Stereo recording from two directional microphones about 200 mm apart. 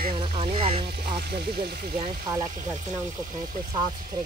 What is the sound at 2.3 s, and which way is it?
Speech, 20° right (ahead or behind).